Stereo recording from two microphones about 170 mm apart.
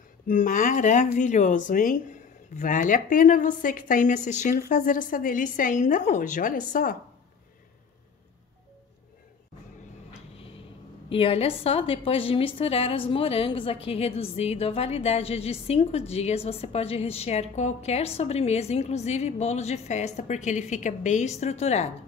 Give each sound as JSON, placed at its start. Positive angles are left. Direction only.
{"t": 0.3, "sound": "speech", "side_deg": 50}
{"t": 11.1, "sound": "a woman's voice", "side_deg": 35}